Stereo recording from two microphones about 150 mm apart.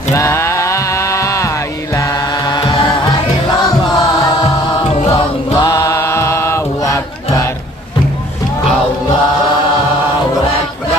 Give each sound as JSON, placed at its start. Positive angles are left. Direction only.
{"t": 0.1, "sound": "music", "side_deg": 20}
{"t": 2.0, "sound": "chant", "side_deg": 25}
{"t": 5.1, "sound": "chant", "side_deg": 25}